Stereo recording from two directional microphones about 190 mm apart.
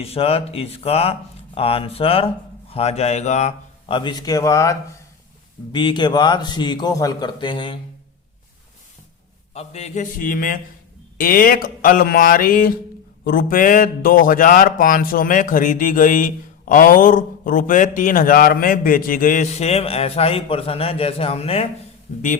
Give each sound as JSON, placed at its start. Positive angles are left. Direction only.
{"t": 0.0, "sound": "speech", "side_deg": 30}
{"t": 9.6, "sound": "a man's voice", "side_deg": 35}